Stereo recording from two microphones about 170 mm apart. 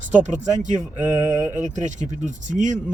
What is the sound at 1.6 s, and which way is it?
Speech, 45° right (ahead or behind).